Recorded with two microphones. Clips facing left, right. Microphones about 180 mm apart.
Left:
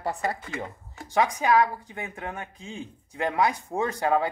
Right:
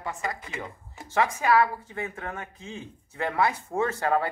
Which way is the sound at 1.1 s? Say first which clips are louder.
Left 1 dB; 15° left (ahead or behind).